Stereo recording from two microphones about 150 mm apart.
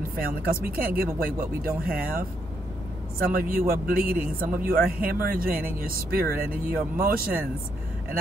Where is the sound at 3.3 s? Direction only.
70° right (ahead or behind).